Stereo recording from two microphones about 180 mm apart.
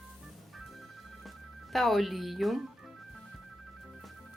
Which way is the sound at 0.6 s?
Centre (ahead or behind).